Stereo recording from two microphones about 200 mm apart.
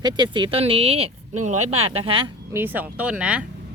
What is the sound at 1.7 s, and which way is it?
Speech, 90° right.